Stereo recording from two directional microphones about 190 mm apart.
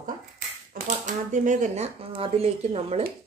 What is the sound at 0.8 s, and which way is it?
Speech, 40° right (ahead or behind).